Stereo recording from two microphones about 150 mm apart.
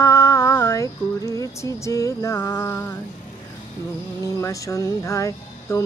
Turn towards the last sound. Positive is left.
turn(degrees=20)  # may be behind; listen again after turning